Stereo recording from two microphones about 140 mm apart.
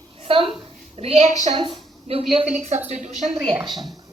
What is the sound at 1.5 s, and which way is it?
Speech, 40° right (ahead or behind).